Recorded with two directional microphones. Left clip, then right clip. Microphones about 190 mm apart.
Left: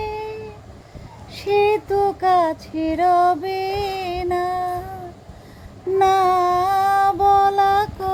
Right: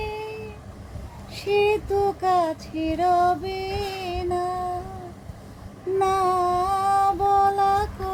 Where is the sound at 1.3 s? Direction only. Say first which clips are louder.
Left 4 dB; 25° left (ahead or behind).